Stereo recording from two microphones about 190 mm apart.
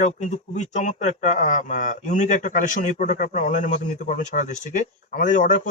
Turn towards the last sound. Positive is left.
turn(degrees=45)  # may be behind; listen again after turning